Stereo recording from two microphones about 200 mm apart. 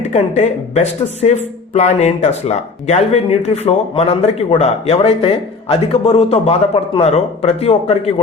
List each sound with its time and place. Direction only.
0.0 s speech: 35° left (ahead or behind)